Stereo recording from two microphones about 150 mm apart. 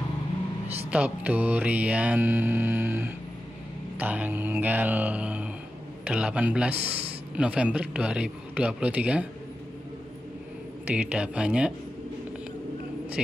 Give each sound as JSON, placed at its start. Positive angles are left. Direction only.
{"t": 0.8, "sound": "mantra", "side_deg": -10}
{"t": 10.9, "sound": "mantra", "side_deg": -10}